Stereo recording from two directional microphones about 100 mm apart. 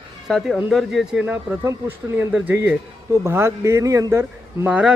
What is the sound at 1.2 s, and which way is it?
A man's voice, 20° right (ahead or behind).